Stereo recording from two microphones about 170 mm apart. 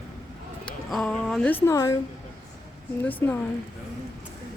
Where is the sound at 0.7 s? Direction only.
5° left (ahead or behind).